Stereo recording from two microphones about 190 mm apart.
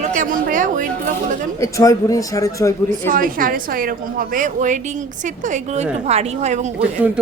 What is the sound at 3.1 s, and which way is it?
A woman's voice, 50° right (ahead or behind).